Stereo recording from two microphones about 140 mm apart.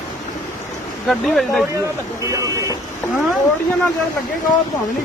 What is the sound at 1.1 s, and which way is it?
Speech, centre (ahead or behind).